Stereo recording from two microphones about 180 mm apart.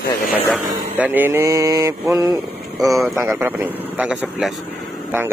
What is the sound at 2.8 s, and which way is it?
Speech, centre (ahead or behind).